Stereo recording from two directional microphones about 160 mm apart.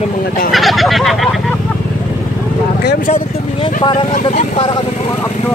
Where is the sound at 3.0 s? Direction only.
40° left (ahead or behind).